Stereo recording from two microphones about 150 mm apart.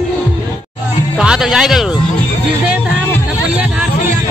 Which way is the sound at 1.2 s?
5° right (ahead or behind).